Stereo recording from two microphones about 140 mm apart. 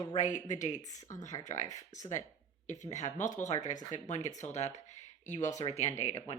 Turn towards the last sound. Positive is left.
turn(degrees=50)  # may be behind; listen again after turning